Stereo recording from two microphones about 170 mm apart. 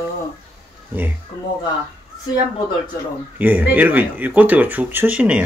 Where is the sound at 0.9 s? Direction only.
10° right (ahead or behind).